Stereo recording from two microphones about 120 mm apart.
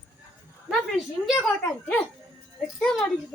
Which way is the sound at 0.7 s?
Centre (ahead or behind).